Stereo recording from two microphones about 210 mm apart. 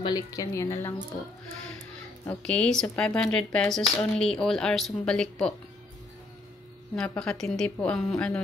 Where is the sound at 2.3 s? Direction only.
5° left (ahead or behind).